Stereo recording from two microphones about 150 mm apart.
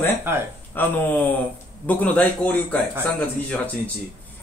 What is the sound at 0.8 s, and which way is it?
A man's voice, 15° left (ahead or behind).